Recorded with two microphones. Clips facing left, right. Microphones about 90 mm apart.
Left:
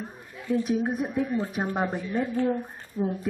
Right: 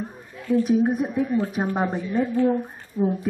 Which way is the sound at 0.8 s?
10° right (ahead or behind).